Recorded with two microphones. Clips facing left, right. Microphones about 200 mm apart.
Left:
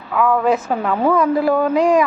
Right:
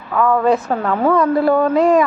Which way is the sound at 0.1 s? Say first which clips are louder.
Right 1 dB; 5° left (ahead or behind).